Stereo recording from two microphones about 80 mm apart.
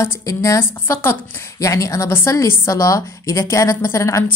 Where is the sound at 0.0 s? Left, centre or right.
Left.